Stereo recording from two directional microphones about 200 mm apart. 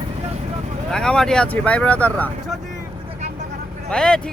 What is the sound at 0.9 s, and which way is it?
Speech, 5° left (ahead or behind).